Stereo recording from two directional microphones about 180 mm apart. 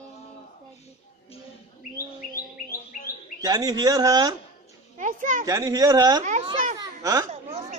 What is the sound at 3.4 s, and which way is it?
Speech, 20° right (ahead or behind).